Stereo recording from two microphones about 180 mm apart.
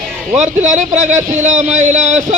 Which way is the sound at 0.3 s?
40° right (ahead or behind).